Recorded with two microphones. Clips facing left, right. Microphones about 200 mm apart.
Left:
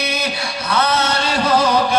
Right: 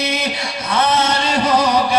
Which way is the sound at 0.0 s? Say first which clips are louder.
Right 1 dB; 25° right (ahead or behind).